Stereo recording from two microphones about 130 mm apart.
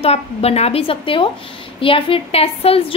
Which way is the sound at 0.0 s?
50° left (ahead or behind).